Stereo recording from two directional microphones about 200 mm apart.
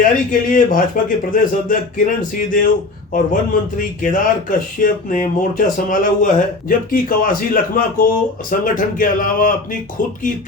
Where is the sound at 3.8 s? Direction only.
40° left (ahead or behind).